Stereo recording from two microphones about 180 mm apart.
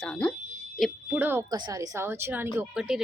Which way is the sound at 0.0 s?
5° left (ahead or behind).